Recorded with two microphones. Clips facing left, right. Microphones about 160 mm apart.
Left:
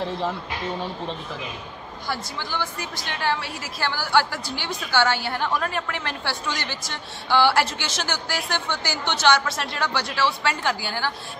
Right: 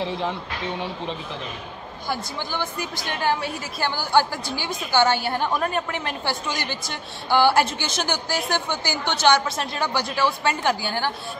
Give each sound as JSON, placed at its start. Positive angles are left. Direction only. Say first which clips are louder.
{"t": 0.0, "sound": "speech", "louder": "even", "side_deg": 0}
{"t": 2.0, "sound": "a woman's voice", "louder": "right 2 dB", "side_deg": -15}
{"t": 3.8, "sound": "a woman's voice", "louder": "right 1 dB", "side_deg": -15}